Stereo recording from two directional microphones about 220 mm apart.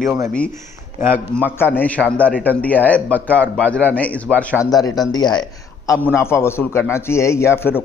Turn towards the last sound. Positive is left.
turn(degrees=10)  # may be behind; listen again after turning